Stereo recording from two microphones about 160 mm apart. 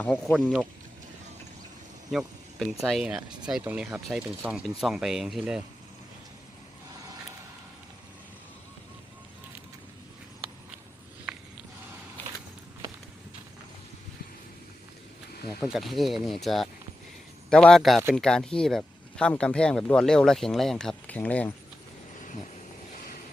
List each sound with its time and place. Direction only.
0.0 s speech: 10° left (ahead or behind)
0.3 s speech: 5° right (ahead or behind)
2.0 s speech: centre (ahead or behind)
15.6 s speech: centre (ahead or behind)